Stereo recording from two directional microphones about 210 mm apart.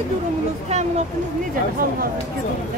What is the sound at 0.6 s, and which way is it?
Speech, 30° right (ahead or behind).